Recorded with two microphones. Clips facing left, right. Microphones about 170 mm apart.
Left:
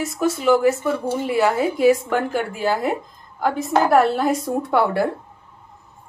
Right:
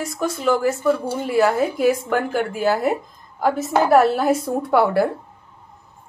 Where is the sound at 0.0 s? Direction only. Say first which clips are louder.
Left 2 dB; centre (ahead or behind).